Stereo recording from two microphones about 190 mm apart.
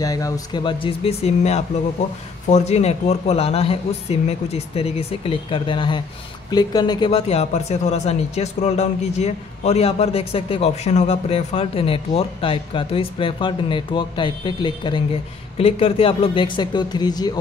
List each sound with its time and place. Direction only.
0.0 s speech: 20° left (ahead or behind)